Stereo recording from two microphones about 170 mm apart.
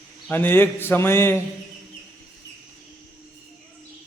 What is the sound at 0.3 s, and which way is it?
A man's voice, 10° left (ahead or behind).